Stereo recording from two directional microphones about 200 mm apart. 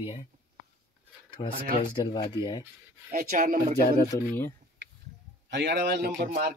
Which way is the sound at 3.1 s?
45° right (ahead or behind).